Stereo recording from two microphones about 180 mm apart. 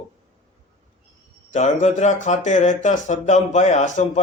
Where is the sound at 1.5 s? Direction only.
40° left (ahead or behind).